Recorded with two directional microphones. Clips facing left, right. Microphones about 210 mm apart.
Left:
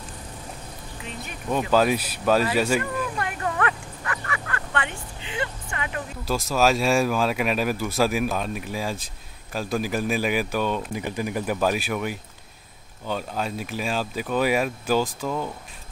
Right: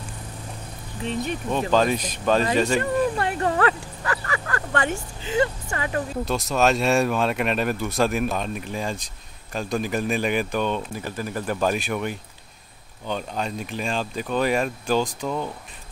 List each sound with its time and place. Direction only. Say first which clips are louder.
1.0 s speech: right 12 dB; 30° right (ahead or behind)
1.5 s speech: left 1 dB; 5° left (ahead or behind)
2.8 s speech: right 6 dB; 30° right (ahead or behind)
6.2 s speech: left 1 dB; centre (ahead or behind)